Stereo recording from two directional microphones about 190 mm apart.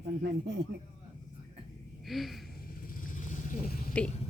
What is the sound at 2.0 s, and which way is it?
Speech, centre (ahead or behind).